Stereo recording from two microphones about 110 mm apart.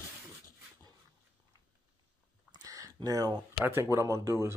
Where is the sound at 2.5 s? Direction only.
35° right (ahead or behind).